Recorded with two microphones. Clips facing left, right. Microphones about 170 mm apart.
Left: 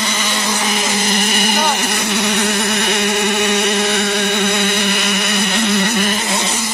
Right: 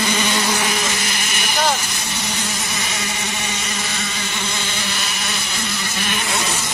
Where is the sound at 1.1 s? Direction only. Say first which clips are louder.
Left 7 dB; 50° left (ahead or behind).